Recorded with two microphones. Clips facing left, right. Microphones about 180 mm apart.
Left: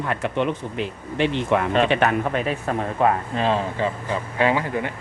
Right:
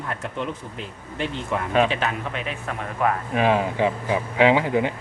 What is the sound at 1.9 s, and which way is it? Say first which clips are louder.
Speech: left 7 dB; 60° left (ahead or behind).